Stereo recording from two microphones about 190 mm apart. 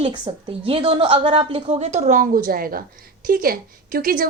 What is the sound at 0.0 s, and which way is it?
A woman's voice, 25° right (ahead or behind).